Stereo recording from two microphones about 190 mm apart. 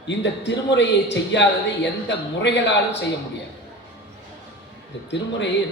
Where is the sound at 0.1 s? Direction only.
70° left (ahead or behind).